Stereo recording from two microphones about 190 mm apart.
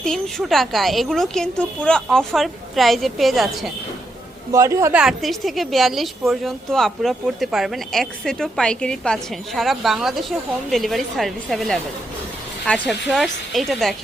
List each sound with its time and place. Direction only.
0.0 s a woman's voice: centre (ahead or behind)
4.5 s speech: 15° right (ahead or behind)
4.9 s a woman's voice: centre (ahead or behind)